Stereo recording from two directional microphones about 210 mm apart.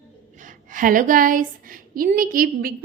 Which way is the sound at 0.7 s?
40° right (ahead or behind).